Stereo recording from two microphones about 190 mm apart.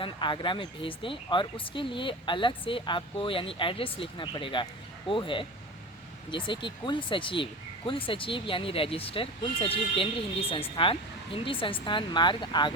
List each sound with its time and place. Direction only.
0.0 s speech: 25° left (ahead or behind)